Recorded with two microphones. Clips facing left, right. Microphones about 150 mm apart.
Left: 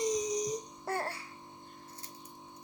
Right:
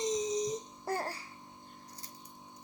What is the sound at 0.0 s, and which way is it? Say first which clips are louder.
Music: even; 25° right (ahead or behind).